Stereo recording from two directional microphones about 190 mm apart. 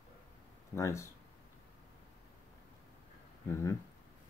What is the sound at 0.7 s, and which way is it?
Speech, 15° left (ahead or behind).